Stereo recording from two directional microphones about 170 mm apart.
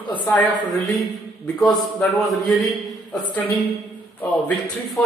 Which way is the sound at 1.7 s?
Centre (ahead or behind).